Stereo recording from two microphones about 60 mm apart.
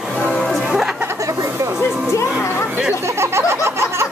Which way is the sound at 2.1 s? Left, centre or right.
Left.